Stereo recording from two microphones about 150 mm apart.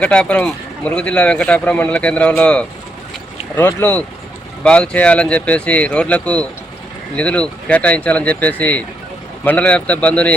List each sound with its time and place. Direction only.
0.0 s speech: 5° left (ahead or behind)